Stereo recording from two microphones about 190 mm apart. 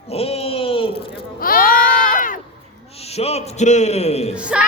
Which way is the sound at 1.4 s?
50° left (ahead or behind).